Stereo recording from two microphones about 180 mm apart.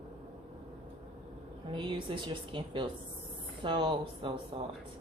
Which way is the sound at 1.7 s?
25° right (ahead or behind).